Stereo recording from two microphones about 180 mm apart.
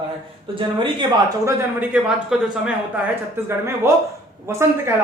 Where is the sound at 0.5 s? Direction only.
25° right (ahead or behind).